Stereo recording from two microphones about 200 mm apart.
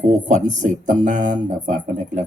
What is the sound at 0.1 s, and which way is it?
Speech, 35° right (ahead or behind).